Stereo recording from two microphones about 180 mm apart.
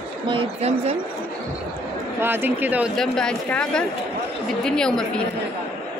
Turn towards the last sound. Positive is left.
turn(degrees=5)  # may be behind; listen again after turning